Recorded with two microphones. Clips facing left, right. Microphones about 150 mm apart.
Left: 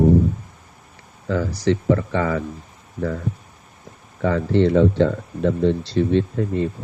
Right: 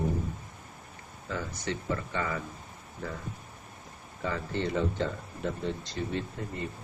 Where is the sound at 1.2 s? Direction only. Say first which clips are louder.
Left 14 dB; 75° left (ahead or behind).